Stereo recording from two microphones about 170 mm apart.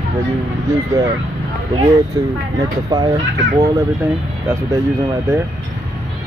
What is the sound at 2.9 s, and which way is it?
Speech, 20° right (ahead or behind).